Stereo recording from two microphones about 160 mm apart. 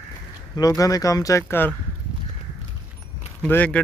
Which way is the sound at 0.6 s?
20° left (ahead or behind).